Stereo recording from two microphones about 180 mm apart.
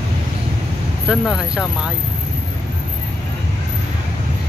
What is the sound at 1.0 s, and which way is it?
Speech, 5° right (ahead or behind).